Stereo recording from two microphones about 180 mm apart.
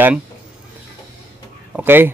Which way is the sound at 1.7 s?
10° right (ahead or behind).